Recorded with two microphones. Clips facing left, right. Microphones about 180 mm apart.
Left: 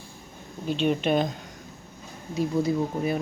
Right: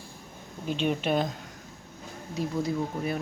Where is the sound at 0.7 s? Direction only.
5° right (ahead or behind).